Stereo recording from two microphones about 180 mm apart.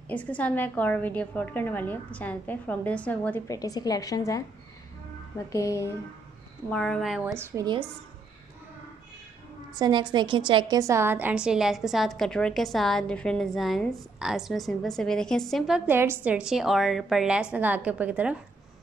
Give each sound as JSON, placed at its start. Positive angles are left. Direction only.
{"t": 0.1, "sound": "a woman's voice", "side_deg": 10}
{"t": 5.5, "sound": "a woman's voice", "side_deg": 15}
{"t": 6.7, "sound": "a woman's voice", "side_deg": 5}
{"t": 7.3, "sound": "a woman's voice", "side_deg": -20}
{"t": 9.8, "sound": "a woman's voice", "side_deg": -25}